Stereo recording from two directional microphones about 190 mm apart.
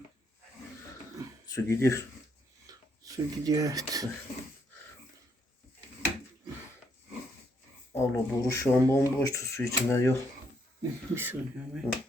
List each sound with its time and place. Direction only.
1.5 s speech: 15° left (ahead or behind)
2.6 s a sound: 20° right (ahead or behind)
7.9 s speech: 15° left (ahead or behind)
11.1 s speech: 10° right (ahead or behind)